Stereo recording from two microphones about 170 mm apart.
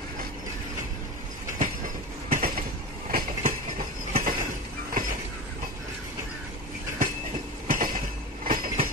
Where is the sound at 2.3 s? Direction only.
55° right (ahead or behind).